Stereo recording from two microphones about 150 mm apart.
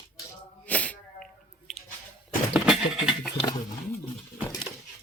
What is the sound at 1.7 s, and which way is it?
Squish, 5° left (ahead or behind).